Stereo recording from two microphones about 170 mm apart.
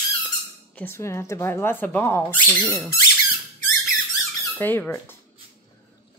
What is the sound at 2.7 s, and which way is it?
Speech, 20° left (ahead or behind).